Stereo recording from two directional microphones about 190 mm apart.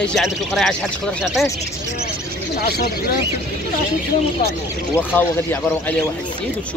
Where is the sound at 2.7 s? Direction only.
55° left (ahead or behind).